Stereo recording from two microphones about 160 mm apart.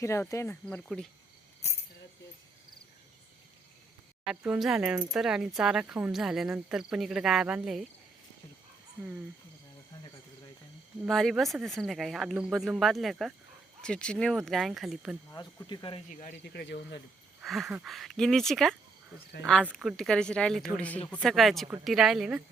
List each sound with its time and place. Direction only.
0.0 s speech: 20° left (ahead or behind)
4.3 s speech: 5° right (ahead or behind)
11.1 s speech: centre (ahead or behind)
15.3 s speech: 25° left (ahead or behind)
16.4 s speech: 90° left
17.4 s a sound: centre (ahead or behind)
17.8 s speech: centre (ahead or behind)
19.7 s speech: centre (ahead or behind)